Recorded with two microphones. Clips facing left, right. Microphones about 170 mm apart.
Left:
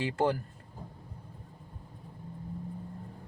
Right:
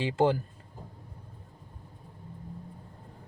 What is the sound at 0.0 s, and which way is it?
Speech, 25° right (ahead or behind).